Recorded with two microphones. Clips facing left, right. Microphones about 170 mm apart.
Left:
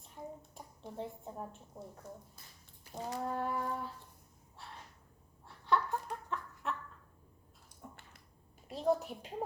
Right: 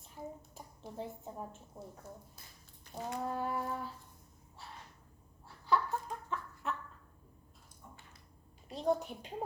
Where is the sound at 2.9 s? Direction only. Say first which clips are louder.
Even; 10° left (ahead or behind).